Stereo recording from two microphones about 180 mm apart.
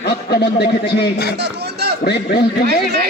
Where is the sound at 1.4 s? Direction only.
65° right (ahead or behind).